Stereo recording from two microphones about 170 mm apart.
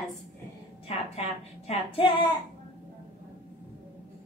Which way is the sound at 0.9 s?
40° left (ahead or behind).